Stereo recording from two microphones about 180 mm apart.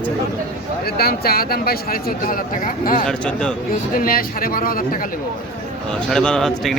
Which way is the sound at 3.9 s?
50° left (ahead or behind).